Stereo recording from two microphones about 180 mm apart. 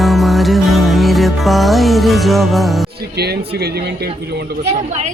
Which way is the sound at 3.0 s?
60° right (ahead or behind).